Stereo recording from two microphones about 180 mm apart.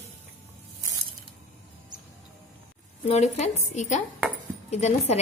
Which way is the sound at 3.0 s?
35° left (ahead or behind).